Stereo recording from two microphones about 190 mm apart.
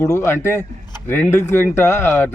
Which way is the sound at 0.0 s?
15° left (ahead or behind).